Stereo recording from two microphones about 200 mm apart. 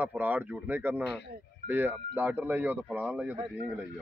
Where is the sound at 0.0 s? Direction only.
10° right (ahead or behind).